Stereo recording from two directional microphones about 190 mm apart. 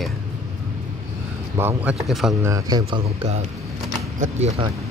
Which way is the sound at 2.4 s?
20° right (ahead or behind).